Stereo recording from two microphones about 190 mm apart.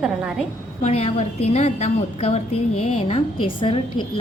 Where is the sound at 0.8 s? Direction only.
35° left (ahead or behind).